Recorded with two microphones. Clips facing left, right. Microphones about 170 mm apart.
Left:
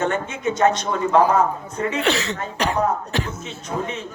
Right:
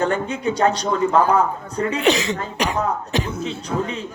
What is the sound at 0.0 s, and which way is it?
Speech, 35° right (ahead or behind).